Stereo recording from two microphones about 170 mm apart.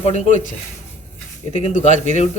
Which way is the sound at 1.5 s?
45° left (ahead or behind).